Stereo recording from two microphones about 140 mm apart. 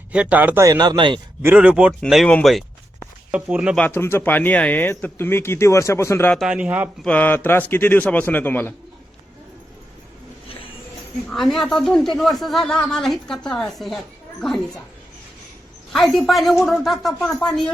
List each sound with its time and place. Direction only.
0.1 s a man's voice: 10° right (ahead or behind)
0.6 s speech: 30° right (ahead or behind)
1.4 s a man's voice: 15° right (ahead or behind)
3.8 s speech: 15° left (ahead or behind)
6.3 s a man's voice: 5° right (ahead or behind)
7.0 s speech: 10° left (ahead or behind)
11.3 s speech: centre (ahead or behind)
15.9 s speech: centre (ahead or behind)